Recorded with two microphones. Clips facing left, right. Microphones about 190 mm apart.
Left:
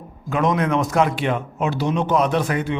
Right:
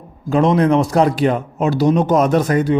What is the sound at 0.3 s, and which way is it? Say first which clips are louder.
A man's voice: right 6 dB; 35° right (ahead or behind).